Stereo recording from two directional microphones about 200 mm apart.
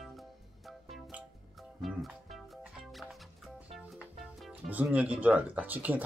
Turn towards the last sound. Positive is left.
turn(degrees=-10)  # may be behind; listen again after turning